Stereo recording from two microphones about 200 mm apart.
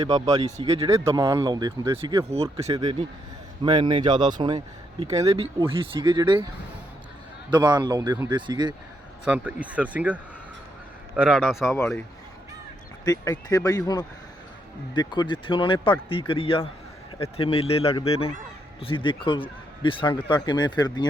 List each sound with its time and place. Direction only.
0.0 s speech: 20° right (ahead or behind)
7.5 s speech: 20° right (ahead or behind)
9.2 s a man's voice: 5° right (ahead or behind)
11.7 s speech: 10° left (ahead or behind)
13.1 s speech: 15° left (ahead or behind)